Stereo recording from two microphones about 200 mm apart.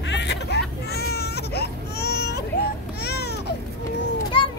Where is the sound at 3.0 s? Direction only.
55° left (ahead or behind).